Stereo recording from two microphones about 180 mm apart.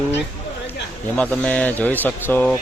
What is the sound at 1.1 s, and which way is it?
A man's voice, 5° left (ahead or behind).